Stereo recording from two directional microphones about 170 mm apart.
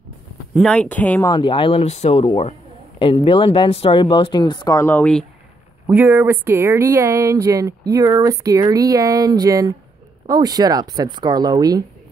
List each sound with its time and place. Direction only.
0.6 s speech: 5° left (ahead or behind)
1.2 s speech: 25° left (ahead or behind)
5.9 s speech: 10° right (ahead or behind)